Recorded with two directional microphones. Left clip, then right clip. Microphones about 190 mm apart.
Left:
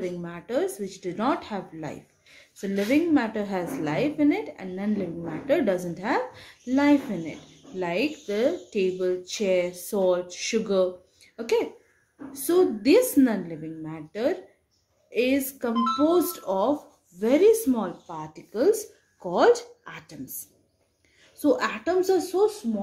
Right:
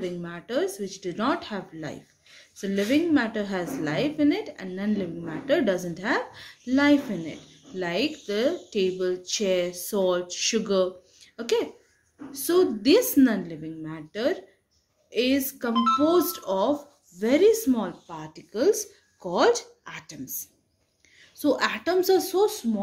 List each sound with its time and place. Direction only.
0.0 s a woman's voice: 5° right (ahead or behind)
15.7 s speech: 55° right (ahead or behind)
16.0 s a woman's voice: 5° right (ahead or behind)
21.4 s a woman's voice: 10° right (ahead or behind); by 22.7 s 25° right (ahead or behind)